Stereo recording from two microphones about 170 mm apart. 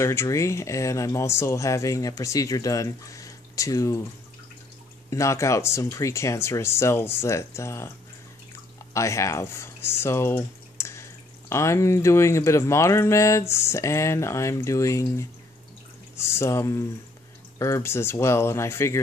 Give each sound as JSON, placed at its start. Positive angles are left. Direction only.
{"t": 0.0, "sound": "speech", "side_deg": 15}
{"t": 5.1, "sound": "speech", "side_deg": 15}
{"t": 8.9, "sound": "speech", "side_deg": 15}